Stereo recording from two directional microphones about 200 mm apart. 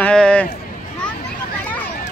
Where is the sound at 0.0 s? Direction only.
5° left (ahead or behind).